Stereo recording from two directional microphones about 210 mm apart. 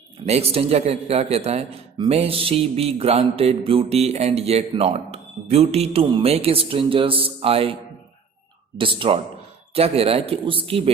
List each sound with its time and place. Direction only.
0.3 s a man's voice: 30° right (ahead or behind)
8.8 s a man's voice: 25° right (ahead or behind)